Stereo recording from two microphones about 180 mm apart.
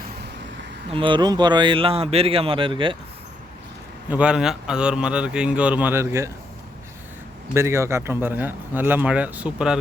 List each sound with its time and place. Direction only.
0.9 s speech: 30° right (ahead or behind)
4.1 s speech: 5° right (ahead or behind)
7.5 s speech: 15° right (ahead or behind)